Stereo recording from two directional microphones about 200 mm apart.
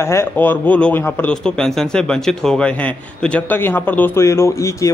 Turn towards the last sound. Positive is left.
turn(degrees=15)  # may be behind; listen again after turning